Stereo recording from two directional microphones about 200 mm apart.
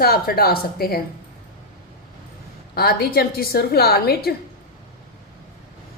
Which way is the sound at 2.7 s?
50° left (ahead or behind).